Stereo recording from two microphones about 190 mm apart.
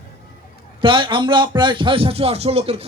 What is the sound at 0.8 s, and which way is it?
Speech, 25° right (ahead or behind).